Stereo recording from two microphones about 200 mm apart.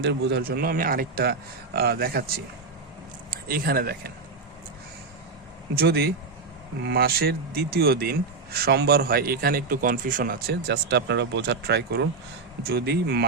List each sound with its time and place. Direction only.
0.0 s speech: 55° right (ahead or behind)
3.5 s speech: 45° right (ahead or behind)
5.7 s speech: 50° right (ahead or behind)